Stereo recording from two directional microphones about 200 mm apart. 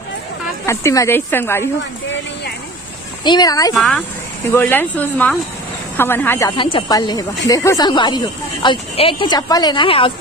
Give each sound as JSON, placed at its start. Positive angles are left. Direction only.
{"t": 0.7, "sound": "speech", "side_deg": 15}
{"t": 3.3, "sound": "speech", "side_deg": 20}
{"t": 3.7, "sound": "speech", "side_deg": 5}
{"t": 6.5, "sound": "speech", "side_deg": 25}